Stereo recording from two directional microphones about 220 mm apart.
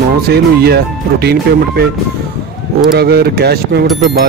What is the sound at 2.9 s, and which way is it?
Speech, 45° right (ahead or behind).